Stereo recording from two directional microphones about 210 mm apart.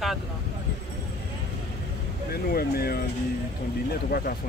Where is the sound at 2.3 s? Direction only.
45° left (ahead or behind).